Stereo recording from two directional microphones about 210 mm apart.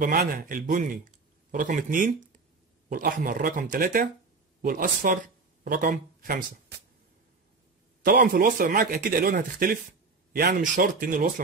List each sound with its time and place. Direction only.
0.0 s a man's voice: 45° right (ahead or behind)
8.0 s speech: 40° right (ahead or behind)